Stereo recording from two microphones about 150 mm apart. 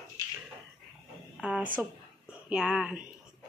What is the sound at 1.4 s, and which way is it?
Speech, 5° right (ahead or behind).